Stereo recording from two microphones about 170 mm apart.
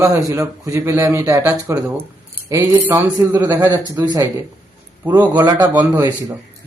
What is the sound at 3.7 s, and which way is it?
Speech, 25° right (ahead or behind).